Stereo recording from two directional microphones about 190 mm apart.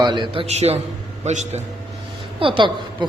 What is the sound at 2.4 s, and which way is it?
Speech, 25° right (ahead or behind).